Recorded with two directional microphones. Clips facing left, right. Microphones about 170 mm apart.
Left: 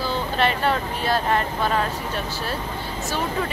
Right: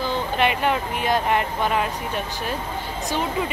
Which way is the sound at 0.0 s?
15° right (ahead or behind).